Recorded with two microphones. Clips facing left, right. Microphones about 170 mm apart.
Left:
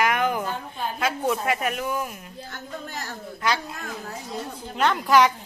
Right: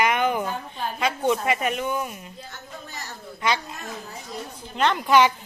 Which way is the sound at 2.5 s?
55° left (ahead or behind).